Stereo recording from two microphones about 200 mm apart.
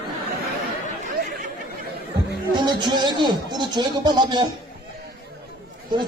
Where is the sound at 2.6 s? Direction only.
20° right (ahead or behind).